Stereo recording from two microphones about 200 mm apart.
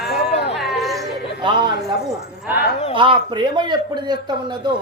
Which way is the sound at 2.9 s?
25° right (ahead or behind).